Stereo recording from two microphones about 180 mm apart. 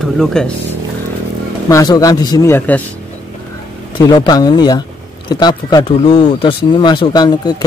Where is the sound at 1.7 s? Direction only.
20° left (ahead or behind).